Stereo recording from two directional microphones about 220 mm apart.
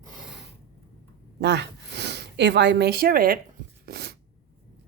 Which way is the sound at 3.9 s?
45° right (ahead or behind).